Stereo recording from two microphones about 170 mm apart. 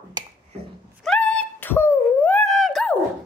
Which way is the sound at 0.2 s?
25° right (ahead or behind).